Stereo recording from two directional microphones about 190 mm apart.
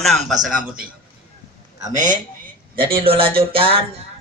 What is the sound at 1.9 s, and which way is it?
Speech, 40° right (ahead or behind).